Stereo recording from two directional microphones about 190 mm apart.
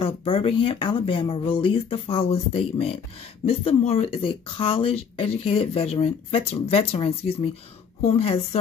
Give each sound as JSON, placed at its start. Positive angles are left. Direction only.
{"t": 0.0, "sound": "speech", "side_deg": 30}